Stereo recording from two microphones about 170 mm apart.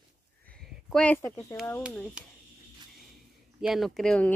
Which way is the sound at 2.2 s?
5° right (ahead or behind).